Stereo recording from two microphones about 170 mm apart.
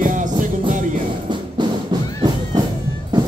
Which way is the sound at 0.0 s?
50° right (ahead or behind).